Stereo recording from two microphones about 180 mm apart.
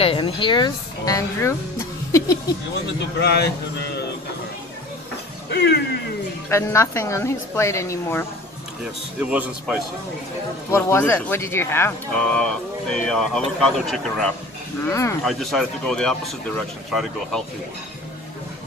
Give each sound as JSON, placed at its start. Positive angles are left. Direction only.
{"t": 0.0, "sound": "speech", "side_deg": 30}
{"t": 3.2, "sound": "speech", "side_deg": 65}
{"t": 5.5, "sound": "speech", "side_deg": 70}
{"t": 6.5, "sound": "a woman's voice", "side_deg": 15}
{"t": 9.2, "sound": "speech", "side_deg": -10}
{"t": 10.7, "sound": "a woman's voice", "side_deg": 15}
{"t": 14.9, "sound": "a woman's voice", "side_deg": 15}
{"t": 15.2, "sound": "speech", "side_deg": 0}